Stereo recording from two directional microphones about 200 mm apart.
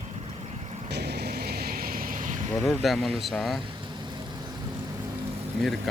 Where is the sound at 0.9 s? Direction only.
55° right (ahead or behind).